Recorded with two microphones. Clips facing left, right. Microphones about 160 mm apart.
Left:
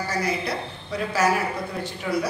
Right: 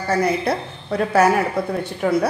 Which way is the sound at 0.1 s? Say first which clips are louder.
Right 10 dB; 55° right (ahead or behind).